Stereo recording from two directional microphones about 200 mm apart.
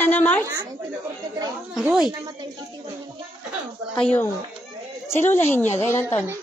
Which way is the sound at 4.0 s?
5° left (ahead or behind).